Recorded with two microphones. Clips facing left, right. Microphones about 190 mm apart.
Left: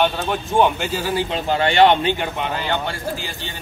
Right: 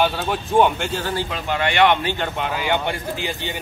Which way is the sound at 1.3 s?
30° left (ahead or behind).